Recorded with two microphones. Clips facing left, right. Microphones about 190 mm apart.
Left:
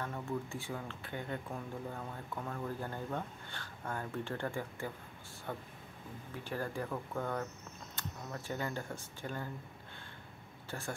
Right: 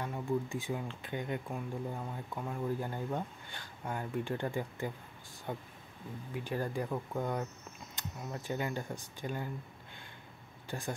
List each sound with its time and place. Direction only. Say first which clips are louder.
0.0 s speech: right 4 dB; 15° right (ahead or behind)
10.7 s speech: right 3 dB; 15° right (ahead or behind)